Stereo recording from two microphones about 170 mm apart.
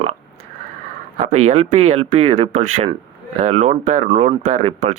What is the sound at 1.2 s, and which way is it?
Speech, 40° right (ahead or behind).